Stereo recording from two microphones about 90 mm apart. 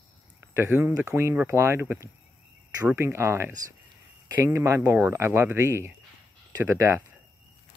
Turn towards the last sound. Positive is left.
turn(degrees=-35)  # may be behind; listen again after turning